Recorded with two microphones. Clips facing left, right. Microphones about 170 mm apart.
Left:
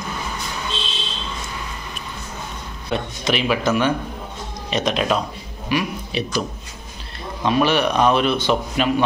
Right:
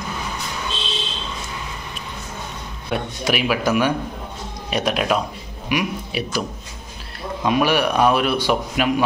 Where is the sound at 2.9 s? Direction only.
10° right (ahead or behind).